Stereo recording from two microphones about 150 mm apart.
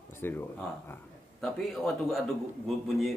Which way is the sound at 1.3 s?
Centre (ahead or behind).